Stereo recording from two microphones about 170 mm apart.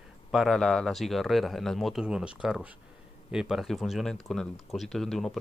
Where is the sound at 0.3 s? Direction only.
Centre (ahead or behind).